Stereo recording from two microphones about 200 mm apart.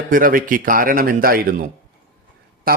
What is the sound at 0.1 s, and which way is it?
Speech, 45° right (ahead or behind).